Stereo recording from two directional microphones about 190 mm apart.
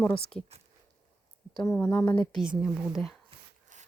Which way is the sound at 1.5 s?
25° left (ahead or behind).